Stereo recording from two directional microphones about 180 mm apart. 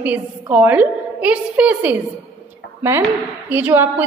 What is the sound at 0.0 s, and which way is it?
A woman's voice, 10° right (ahead or behind).